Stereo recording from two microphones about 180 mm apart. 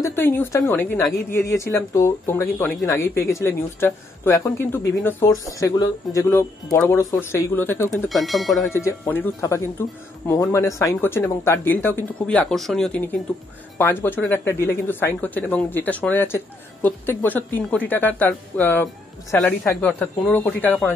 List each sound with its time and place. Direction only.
0.0 s speech: 15° left (ahead or behind)
8.1 s speech: centre (ahead or behind)
8.6 s speech: 15° left (ahead or behind)